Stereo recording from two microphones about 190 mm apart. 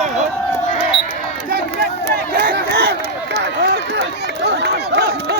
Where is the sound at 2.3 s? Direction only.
55° right (ahead or behind).